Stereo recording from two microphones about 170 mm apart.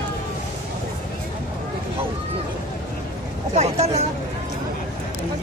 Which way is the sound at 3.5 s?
40° right (ahead or behind).